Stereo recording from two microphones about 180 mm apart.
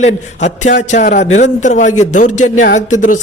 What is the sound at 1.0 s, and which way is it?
A man's voice, 55° left (ahead or behind).